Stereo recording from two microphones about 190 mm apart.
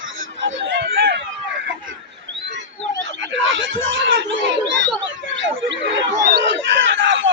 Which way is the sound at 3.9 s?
70° right (ahead or behind).